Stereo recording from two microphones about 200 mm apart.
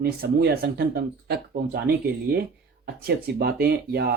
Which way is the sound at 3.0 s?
50° right (ahead or behind).